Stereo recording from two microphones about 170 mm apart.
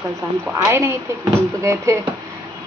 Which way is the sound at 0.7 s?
15° right (ahead or behind).